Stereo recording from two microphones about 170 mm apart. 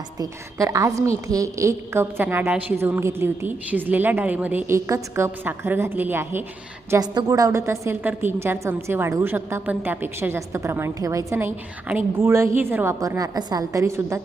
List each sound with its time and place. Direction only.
0.2 s a woman's voice: 20° right (ahead or behind)
6.9 s a woman's voice: 25° right (ahead or behind)